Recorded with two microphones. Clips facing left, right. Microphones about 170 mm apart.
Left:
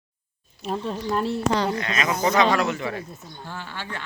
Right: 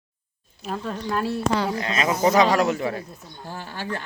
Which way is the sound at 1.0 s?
Centre (ahead or behind).